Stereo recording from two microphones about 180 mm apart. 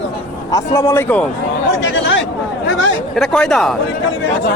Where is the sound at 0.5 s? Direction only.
15° left (ahead or behind).